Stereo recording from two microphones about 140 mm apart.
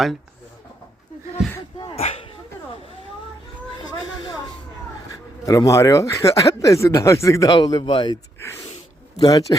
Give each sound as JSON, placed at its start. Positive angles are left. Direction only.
{"t": 1.9, "sound": "a sound", "side_deg": 45}
{"t": 4.0, "sound": "a sound", "side_deg": 30}
{"t": 5.5, "sound": "speech", "side_deg": 25}
{"t": 7.5, "sound": "a man's voice", "side_deg": 35}
{"t": 8.4, "sound": "speech", "side_deg": 20}
{"t": 9.1, "sound": "speech", "side_deg": 30}